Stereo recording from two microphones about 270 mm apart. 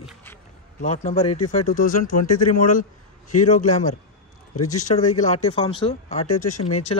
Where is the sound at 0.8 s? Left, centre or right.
Left.